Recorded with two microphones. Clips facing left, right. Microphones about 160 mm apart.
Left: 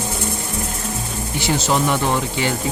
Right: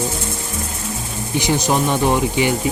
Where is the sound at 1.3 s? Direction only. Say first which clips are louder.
Right 2 dB; 15° right (ahead or behind).